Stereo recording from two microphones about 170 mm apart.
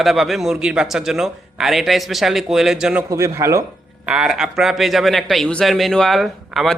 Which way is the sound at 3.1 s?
15° right (ahead or behind).